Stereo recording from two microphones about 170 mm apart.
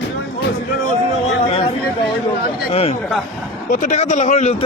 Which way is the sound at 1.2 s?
35° left (ahead or behind).